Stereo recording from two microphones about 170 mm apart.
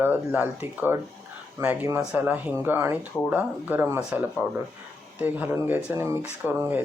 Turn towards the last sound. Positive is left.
turn(degrees=-10)  # may be behind; listen again after turning